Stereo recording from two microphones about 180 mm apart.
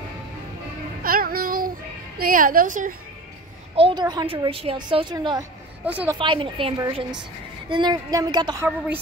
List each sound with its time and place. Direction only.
1.0 s child singing: 55° right (ahead or behind)
2.1 s a woman's voice: 50° right (ahead or behind)
3.7 s a woman's voice: 25° right (ahead or behind)
5.9 s a woman's voice: 10° right (ahead or behind)
6.1 s a woman's voice: 25° right (ahead or behind)